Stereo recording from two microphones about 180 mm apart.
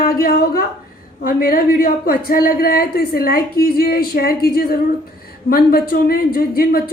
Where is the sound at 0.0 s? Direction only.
55° left (ahead or behind).